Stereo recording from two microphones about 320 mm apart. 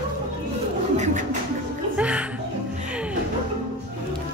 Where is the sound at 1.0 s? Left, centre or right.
Right.